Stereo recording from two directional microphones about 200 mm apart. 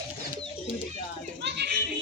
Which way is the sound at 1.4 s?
55° right (ahead or behind).